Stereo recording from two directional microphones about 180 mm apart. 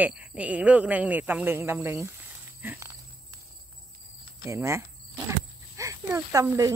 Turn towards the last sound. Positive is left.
turn(degrees=-20)  # may be behind; listen again after turning